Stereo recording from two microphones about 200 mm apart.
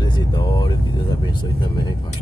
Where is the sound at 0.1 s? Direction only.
25° left (ahead or behind).